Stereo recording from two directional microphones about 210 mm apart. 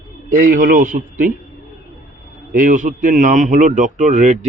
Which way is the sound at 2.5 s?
40° right (ahead or behind).